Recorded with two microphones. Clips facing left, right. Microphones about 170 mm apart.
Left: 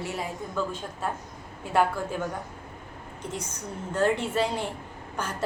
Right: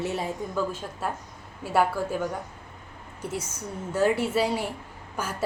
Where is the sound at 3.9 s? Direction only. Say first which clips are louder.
Right 2 dB; 10° right (ahead or behind).